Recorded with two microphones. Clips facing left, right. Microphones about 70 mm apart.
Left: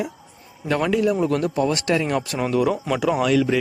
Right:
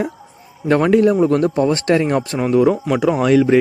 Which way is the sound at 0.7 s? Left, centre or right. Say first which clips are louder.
Right 7 dB; right.